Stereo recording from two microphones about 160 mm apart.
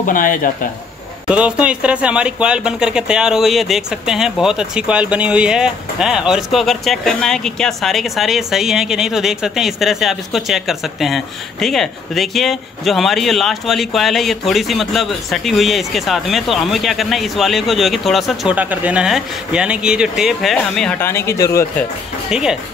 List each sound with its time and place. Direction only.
0.0 s speech: 60° left (ahead or behind)
1.3 s speech: 10° right (ahead or behind); by 21.6 s 20° left (ahead or behind)
22.3 s speech: 5° right (ahead or behind)